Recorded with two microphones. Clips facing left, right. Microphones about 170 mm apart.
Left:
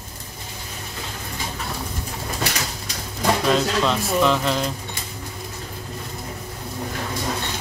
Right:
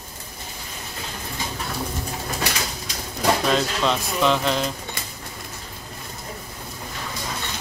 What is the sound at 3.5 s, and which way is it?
Speech, centre (ahead or behind).